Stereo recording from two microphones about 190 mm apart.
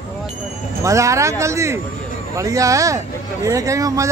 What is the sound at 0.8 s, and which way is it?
Speech, 15° right (ahead or behind).